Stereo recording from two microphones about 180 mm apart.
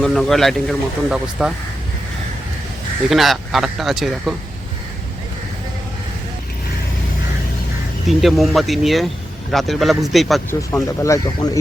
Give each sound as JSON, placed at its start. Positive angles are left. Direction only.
{"t": 0.0, "sound": "speech", "side_deg": 0}
{"t": 3.1, "sound": "speech", "side_deg": 0}
{"t": 8.0, "sound": "speech", "side_deg": 0}
{"t": 10.5, "sound": "speech", "side_deg": 15}